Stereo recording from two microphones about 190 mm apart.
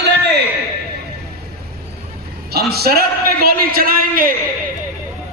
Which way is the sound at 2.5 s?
55° right (ahead or behind).